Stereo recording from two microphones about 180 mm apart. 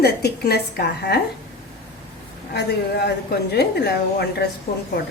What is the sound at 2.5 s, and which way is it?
A woman's voice, 65° left (ahead or behind).